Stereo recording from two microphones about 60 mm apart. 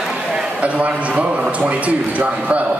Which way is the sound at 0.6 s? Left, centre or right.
Right.